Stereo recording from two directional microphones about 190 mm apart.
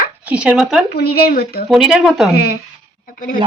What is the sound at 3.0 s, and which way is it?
Speech, 45° left (ahead or behind).